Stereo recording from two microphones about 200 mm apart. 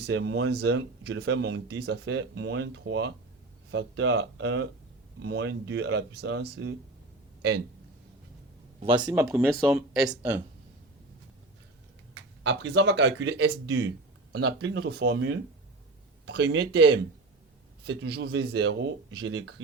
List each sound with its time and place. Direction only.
0.0 s speech: 70° right (ahead or behind)
8.8 s speech: 25° right (ahead or behind)
9.5 s speech: 5° right (ahead or behind)
12.4 s speech: 60° right (ahead or behind)